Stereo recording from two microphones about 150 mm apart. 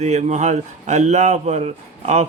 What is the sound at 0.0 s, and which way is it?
Speech, 50° right (ahead or behind).